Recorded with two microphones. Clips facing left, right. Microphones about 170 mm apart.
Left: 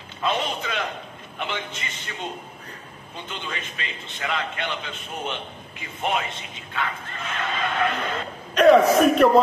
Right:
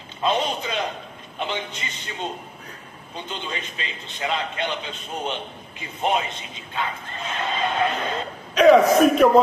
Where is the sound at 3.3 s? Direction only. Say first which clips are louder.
Right 1 dB; 20° right (ahead or behind).